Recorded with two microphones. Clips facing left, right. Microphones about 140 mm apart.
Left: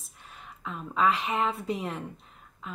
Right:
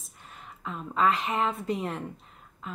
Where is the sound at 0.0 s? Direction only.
Centre (ahead or behind).